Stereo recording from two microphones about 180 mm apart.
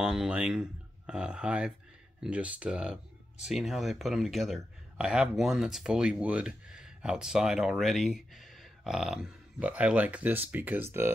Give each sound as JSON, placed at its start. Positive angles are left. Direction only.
{"t": 0.0, "sound": "speech", "side_deg": -5}